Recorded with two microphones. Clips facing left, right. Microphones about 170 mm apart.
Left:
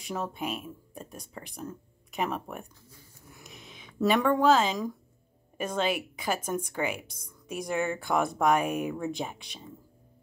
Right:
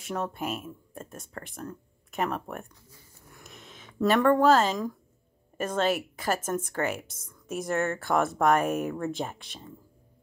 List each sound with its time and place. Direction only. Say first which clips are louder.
0.0 s speech: right 2 dB; centre (ahead or behind)
3.4 s a sound: right 1 dB; 5° left (ahead or behind)
4.6 s speech: right 1 dB; centre (ahead or behind)
7.4 s speech: right 2 dB; centre (ahead or behind)
7.7 s speech: right 1 dB; 10° left (ahead or behind)
8.0 s speech: right 2 dB; centre (ahead or behind)